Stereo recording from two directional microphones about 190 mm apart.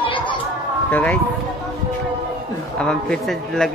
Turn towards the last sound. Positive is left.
turn(degrees=5)  # may be behind; listen again after turning